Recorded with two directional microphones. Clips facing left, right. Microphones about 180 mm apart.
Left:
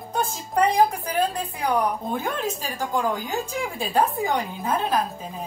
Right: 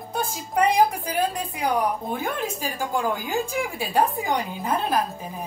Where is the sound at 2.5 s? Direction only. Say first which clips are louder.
Even; 10° right (ahead or behind).